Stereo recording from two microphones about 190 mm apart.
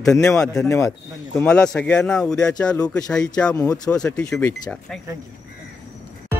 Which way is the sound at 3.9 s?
5° left (ahead or behind).